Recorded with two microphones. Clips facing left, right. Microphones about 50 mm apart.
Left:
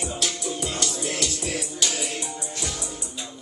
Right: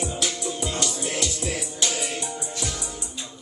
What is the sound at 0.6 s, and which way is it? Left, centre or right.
Music, centre.